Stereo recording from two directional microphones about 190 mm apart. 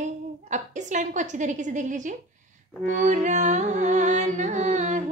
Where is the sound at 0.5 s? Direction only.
40° right (ahead or behind).